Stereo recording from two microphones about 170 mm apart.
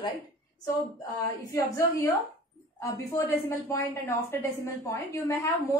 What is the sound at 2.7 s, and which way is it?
A woman's voice, 20° left (ahead or behind).